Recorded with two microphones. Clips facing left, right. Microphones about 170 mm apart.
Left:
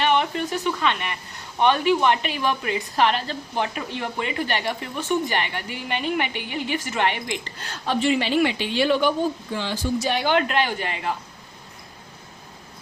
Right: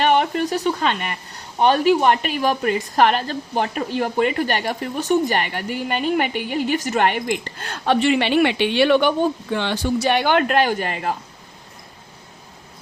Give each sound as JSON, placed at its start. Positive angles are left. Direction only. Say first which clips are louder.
{"t": 0.0, "sound": "a woman's voice", "louder": "right 4 dB", "side_deg": -40}